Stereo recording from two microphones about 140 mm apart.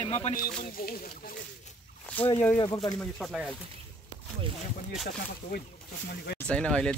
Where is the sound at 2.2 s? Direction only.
10° left (ahead or behind).